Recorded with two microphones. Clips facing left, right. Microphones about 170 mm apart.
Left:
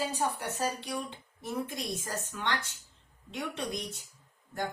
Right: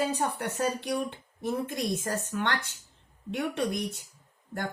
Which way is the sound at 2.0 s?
60° right (ahead or behind).